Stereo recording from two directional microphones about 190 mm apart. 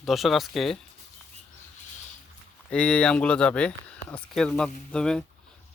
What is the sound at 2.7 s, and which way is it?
Speech, 5° left (ahead or behind).